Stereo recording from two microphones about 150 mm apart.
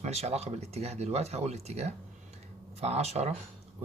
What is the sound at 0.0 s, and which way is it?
Speech, 45° right (ahead or behind).